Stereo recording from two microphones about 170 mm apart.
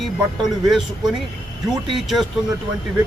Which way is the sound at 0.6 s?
5° right (ahead or behind).